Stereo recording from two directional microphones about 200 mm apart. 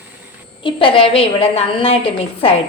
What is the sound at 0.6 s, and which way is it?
A woman's voice, 25° left (ahead or behind).